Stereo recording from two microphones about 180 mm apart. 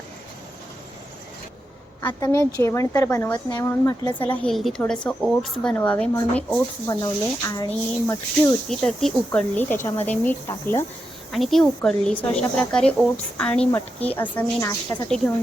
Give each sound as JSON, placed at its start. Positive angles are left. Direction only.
{"t": 2.0, "sound": "a woman's voice", "side_deg": 15}
{"t": 6.8, "sound": "speech", "side_deg": 20}
{"t": 8.7, "sound": "speech", "side_deg": 0}
{"t": 11.3, "sound": "a woman's voice", "side_deg": 0}